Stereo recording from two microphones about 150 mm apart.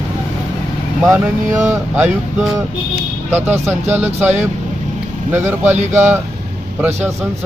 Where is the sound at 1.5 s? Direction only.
15° right (ahead or behind).